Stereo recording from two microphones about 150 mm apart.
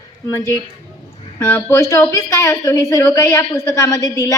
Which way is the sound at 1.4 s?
15° left (ahead or behind).